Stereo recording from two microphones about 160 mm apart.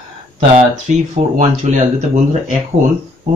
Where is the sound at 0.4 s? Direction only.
45° right (ahead or behind).